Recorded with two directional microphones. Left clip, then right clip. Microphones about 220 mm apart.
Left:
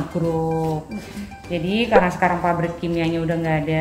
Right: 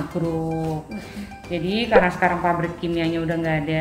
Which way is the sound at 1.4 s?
15° left (ahead or behind).